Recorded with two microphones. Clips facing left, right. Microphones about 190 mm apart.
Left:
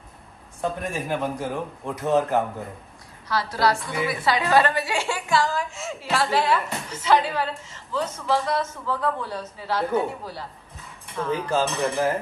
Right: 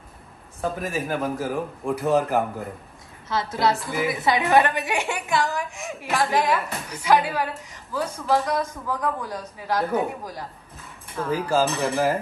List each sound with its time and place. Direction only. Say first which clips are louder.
0.6 s a man's voice: right 1 dB; centre (ahead or behind)
3.3 s a woman's voice: even; 20° right (ahead or behind)
3.7 s a man's voice: right 1 dB; centre (ahead or behind)
4.1 s a woman's voice: right 1 dB; 20° right (ahead or behind); by 12.1 s centre (ahead or behind)